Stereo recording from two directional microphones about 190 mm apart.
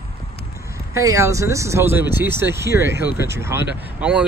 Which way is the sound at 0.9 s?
15° right (ahead or behind).